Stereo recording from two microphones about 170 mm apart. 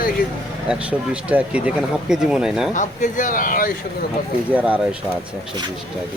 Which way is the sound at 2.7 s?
50° left (ahead or behind).